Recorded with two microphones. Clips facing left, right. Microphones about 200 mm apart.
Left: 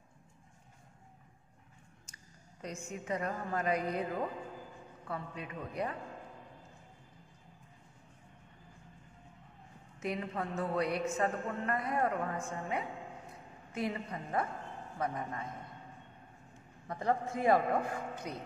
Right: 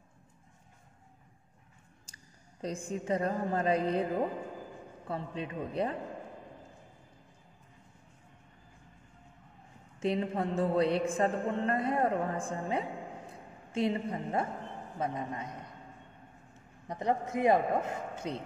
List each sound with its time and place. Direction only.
2.1 s a sound: 30° right (ahead or behind)
2.6 s a woman's voice: 30° right (ahead or behind)
9.9 s a woman's voice: 30° right (ahead or behind)
16.8 s a man's voice: 20° right (ahead or behind)